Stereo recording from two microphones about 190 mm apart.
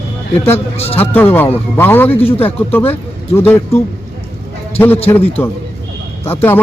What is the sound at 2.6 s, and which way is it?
A man's voice, 10° left (ahead or behind).